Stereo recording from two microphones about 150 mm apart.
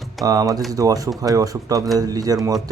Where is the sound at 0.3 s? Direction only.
25° right (ahead or behind).